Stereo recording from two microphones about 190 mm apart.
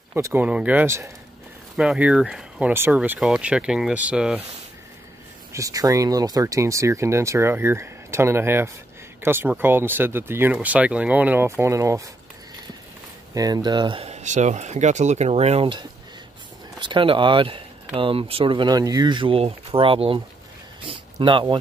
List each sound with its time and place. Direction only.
0.1 s speech: 10° right (ahead or behind)
5.5 s speech: 15° right (ahead or behind)
13.3 s speech: 20° right (ahead or behind)